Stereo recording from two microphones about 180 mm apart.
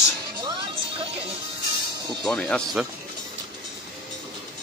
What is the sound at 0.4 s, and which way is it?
Music, 25° right (ahead or behind).